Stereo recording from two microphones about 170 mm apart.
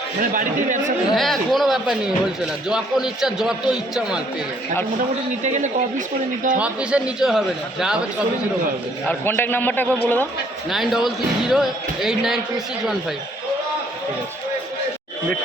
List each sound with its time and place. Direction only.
0.2 s speech: 50° right (ahead or behind)
1.1 s speech: centre (ahead or behind)
5.4 s speech: 45° right (ahead or behind)
6.6 s speech: 5° right (ahead or behind)
9.0 s a man's voice: 10° left (ahead or behind)
10.7 s speech: centre (ahead or behind)